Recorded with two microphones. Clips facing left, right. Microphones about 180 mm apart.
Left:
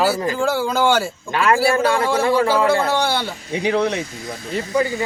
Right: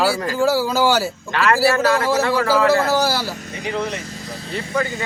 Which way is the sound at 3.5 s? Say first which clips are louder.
Left 8 dB; 70° left (ahead or behind).